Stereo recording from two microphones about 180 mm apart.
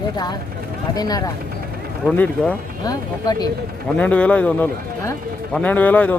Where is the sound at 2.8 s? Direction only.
20° left (ahead or behind).